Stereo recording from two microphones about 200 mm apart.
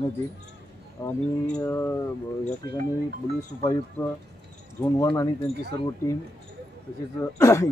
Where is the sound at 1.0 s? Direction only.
15° left (ahead or behind).